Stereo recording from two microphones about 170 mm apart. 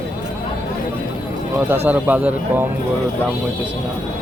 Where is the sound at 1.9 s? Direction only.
10° right (ahead or behind).